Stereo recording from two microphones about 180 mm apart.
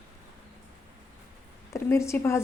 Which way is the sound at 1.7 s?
15° left (ahead or behind).